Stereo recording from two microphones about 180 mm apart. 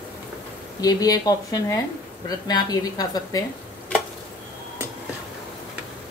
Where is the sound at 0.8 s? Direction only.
20° left (ahead or behind).